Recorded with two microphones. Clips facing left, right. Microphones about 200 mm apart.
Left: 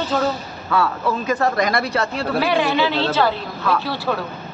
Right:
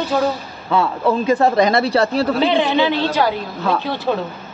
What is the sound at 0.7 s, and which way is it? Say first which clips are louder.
Speech: right 3 dB; 25° right (ahead or behind).